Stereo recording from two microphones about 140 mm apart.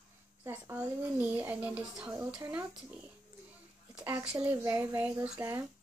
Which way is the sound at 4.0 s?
10° right (ahead or behind).